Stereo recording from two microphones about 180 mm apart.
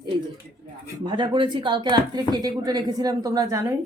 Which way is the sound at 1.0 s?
25° right (ahead or behind).